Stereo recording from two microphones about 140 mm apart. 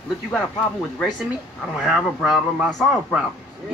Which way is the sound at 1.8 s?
5° right (ahead or behind).